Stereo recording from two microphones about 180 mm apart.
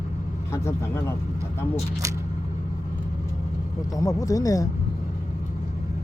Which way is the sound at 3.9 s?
20° left (ahead or behind).